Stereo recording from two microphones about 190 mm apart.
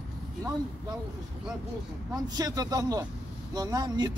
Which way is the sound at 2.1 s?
20° right (ahead or behind).